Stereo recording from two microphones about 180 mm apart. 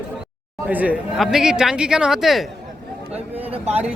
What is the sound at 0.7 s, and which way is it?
Speech, 10° right (ahead or behind).